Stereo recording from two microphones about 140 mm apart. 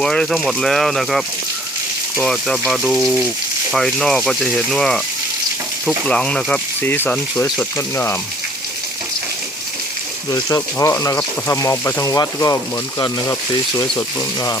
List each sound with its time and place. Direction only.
0.0 s speech: 5° left (ahead or behind)
6.1 s speech: 5° left (ahead or behind)
10.3 s speech: 20° left (ahead or behind)